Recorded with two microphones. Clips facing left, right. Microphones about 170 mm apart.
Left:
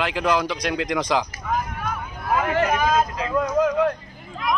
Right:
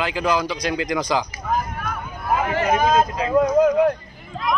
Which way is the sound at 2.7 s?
35° right (ahead or behind).